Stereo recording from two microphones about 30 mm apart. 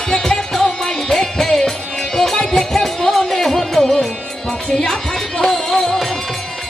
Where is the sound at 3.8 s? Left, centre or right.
Left.